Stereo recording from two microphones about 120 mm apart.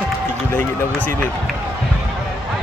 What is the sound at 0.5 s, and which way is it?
Speech, 20° left (ahead or behind).